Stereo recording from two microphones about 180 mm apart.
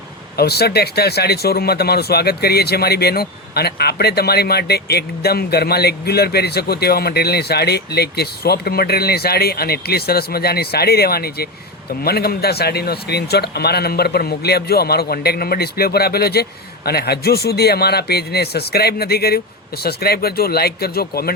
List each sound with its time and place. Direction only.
0.3 s speech: 60° left (ahead or behind)